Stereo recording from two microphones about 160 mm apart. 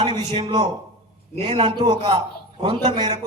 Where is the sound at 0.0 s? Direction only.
30° right (ahead or behind).